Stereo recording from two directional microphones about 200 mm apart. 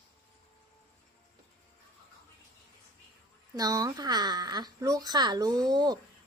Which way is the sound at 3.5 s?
20° right (ahead or behind).